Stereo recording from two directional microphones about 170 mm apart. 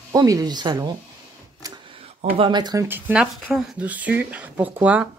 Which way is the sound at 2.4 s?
25° right (ahead or behind).